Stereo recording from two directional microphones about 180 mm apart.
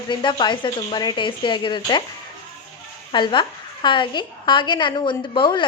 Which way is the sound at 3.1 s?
25° left (ahead or behind).